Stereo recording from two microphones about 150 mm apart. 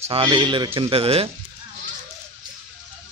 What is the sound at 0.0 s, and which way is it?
Speech, 35° right (ahead or behind).